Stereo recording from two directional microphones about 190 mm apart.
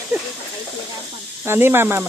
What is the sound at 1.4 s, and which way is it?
Speech, 10° right (ahead or behind).